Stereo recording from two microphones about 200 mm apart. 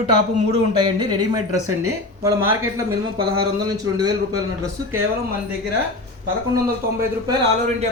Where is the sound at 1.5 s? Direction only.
90° right.